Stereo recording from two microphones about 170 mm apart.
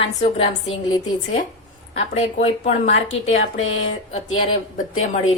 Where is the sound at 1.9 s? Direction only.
40° left (ahead or behind).